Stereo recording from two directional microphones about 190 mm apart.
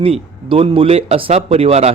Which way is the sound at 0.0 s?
30° right (ahead or behind).